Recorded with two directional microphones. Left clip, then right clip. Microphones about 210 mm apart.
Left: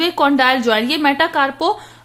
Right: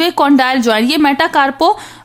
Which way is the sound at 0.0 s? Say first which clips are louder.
Right 3 dB; 25° right (ahead or behind).